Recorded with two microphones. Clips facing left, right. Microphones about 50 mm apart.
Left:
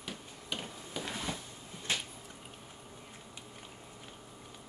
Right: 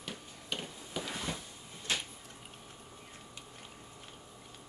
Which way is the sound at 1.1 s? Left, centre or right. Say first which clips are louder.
Even; centre.